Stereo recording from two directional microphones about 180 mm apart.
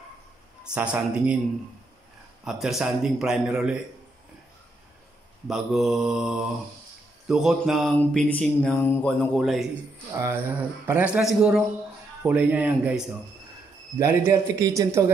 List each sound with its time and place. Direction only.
0.7 s speech: 10° right (ahead or behind)
2.4 s mantra: 5° right (ahead or behind)
5.5 s mantra: centre (ahead or behind)
10.1 s speech: 15° right (ahead or behind)
12.2 s speech: 5° right (ahead or behind)